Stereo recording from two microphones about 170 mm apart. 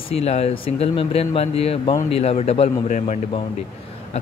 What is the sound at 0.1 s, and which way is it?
Speech, 40° left (ahead or behind).